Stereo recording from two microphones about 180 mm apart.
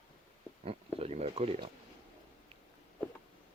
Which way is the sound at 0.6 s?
35° right (ahead or behind).